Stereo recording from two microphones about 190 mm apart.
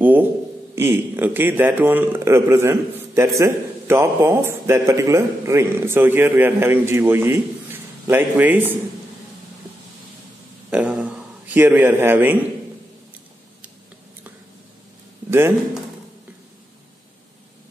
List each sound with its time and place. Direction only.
0.0 s a sound: 10° right (ahead or behind)
0.7 s a man's voice: 10° right (ahead or behind)
10.7 s a man's voice: 5° right (ahead or behind)